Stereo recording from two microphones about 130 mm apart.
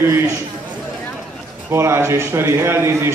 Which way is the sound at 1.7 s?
20° right (ahead or behind).